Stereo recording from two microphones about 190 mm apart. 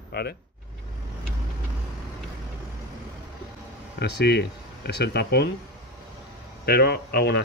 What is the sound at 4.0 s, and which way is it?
Speech, 60° left (ahead or behind).